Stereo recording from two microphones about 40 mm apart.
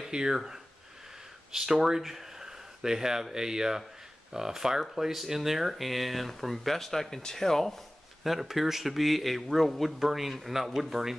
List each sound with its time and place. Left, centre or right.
0.1 s speech: centre
1.5 s speech: centre
8.2 s speech: centre